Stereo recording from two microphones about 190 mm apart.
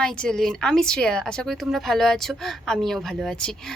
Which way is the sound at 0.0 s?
5° left (ahead or behind).